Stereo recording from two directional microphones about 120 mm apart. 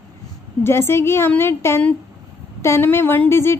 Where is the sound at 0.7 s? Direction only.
20° left (ahead or behind).